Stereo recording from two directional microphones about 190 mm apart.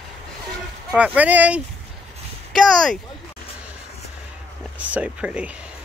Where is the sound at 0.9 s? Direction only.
5° right (ahead or behind).